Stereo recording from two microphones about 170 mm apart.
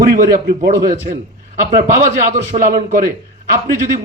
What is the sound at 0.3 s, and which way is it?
Speech, 65° right (ahead or behind).